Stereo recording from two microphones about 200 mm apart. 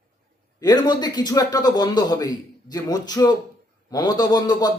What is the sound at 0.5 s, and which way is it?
A man's voice, 20° left (ahead or behind).